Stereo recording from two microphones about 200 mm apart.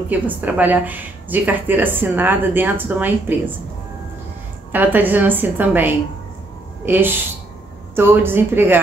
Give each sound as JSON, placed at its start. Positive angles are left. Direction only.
{"t": 0.1, "sound": "speech", "side_deg": -10}
{"t": 4.7, "sound": "speech", "side_deg": -10}